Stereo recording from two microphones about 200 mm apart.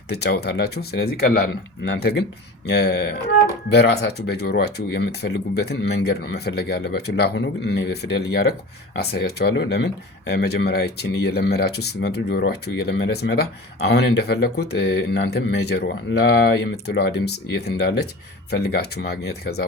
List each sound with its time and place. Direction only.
0.1 s speech: 55° left (ahead or behind)